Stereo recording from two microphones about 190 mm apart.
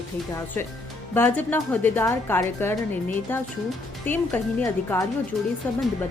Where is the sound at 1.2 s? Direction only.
10° left (ahead or behind).